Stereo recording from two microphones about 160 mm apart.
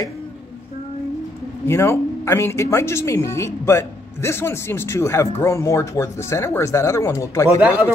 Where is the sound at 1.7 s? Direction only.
15° left (ahead or behind).